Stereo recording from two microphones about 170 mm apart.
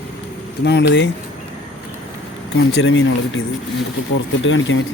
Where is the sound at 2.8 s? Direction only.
90° left.